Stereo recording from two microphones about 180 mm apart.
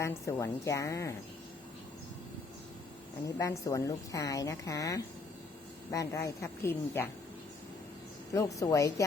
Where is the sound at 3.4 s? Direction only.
15° left (ahead or behind).